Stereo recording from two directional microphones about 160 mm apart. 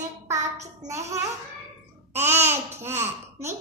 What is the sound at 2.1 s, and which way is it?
Speech, 15° right (ahead or behind).